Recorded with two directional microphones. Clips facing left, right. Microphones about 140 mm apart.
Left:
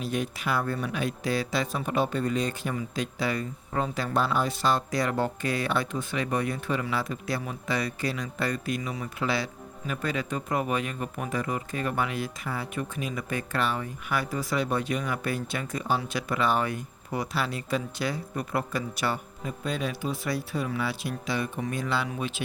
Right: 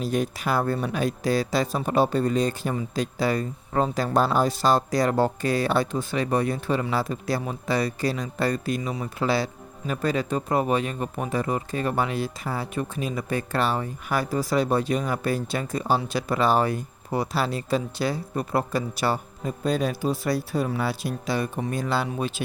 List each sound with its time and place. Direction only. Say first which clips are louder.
0.0 s speech: right 4 dB; 40° right (ahead or behind)